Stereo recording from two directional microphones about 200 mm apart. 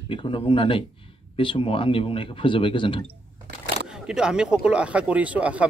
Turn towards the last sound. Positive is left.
turn(degrees=-5)  # may be behind; listen again after turning